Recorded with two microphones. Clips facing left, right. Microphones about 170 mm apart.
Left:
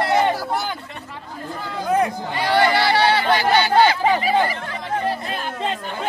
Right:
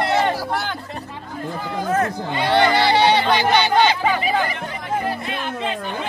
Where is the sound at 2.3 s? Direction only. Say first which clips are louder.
Right 2 dB; 20° right (ahead or behind).